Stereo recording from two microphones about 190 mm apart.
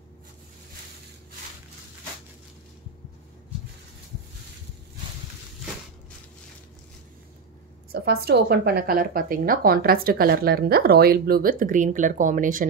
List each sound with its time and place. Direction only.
7.9 s a woman's voice: 55° right (ahead or behind)